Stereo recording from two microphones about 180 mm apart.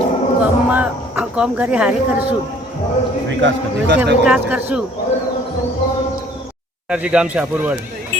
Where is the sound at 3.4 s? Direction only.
75° right (ahead or behind).